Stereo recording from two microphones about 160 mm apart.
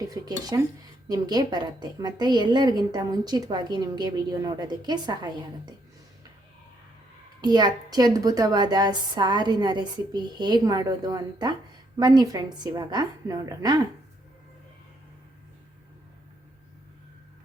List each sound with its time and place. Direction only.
0.1 s a woman's voice: 25° right (ahead or behind)
7.4 s a woman's voice: 25° right (ahead or behind)